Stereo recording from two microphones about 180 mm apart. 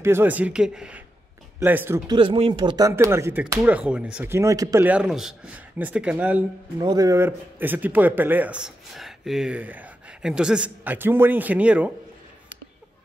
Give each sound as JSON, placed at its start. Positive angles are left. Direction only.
{"t": 0.0, "sound": "speech", "side_deg": -10}
{"t": 2.0, "sound": "speech", "side_deg": -25}
{"t": 4.8, "sound": "speech", "side_deg": -5}
{"t": 6.8, "sound": "speech", "side_deg": -20}